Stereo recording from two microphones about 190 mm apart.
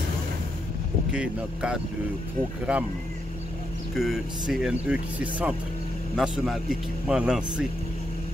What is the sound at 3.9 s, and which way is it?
Speech, centre (ahead or behind).